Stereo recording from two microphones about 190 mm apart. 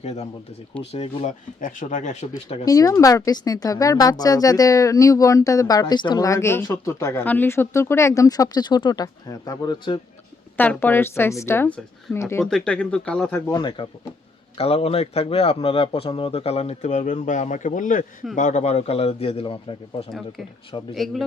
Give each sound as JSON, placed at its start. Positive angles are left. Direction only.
{"t": 0.0, "sound": "speech", "side_deg": 35}
{"t": 2.6, "sound": "speech", "side_deg": 15}
{"t": 10.6, "sound": "speech", "side_deg": 10}
{"t": 13.5, "sound": "speech", "side_deg": 25}
{"t": 20.9, "sound": "speech", "side_deg": 0}